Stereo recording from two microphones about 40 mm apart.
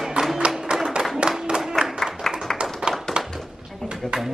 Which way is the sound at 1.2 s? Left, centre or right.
Right.